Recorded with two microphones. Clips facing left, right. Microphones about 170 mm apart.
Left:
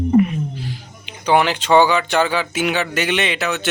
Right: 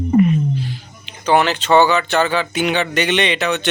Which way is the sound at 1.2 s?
10° left (ahead or behind).